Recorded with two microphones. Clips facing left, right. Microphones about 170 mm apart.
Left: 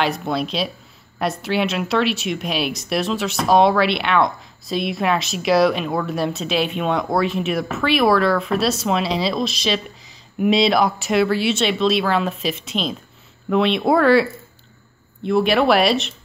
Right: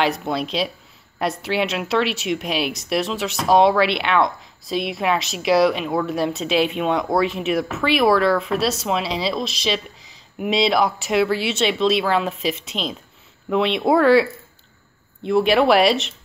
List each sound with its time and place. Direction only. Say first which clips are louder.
0.3 s speech: even; 20° right (ahead or behind)
10.4 s speech: left 2 dB; 10° right (ahead or behind)
15.2 s speech: even; 20° right (ahead or behind)